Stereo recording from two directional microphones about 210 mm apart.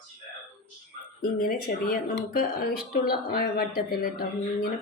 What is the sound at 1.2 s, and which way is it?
Speech, 45° left (ahead or behind).